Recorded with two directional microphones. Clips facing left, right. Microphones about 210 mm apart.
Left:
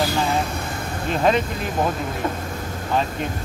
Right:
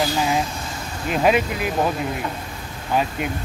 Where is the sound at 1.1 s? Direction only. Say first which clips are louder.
Right 1 dB; 10° right (ahead or behind).